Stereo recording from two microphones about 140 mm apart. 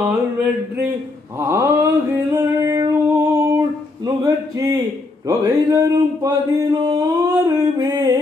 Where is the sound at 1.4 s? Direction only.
20° right (ahead or behind).